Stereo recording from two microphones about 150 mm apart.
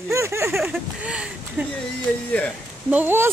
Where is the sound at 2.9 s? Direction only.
15° right (ahead or behind).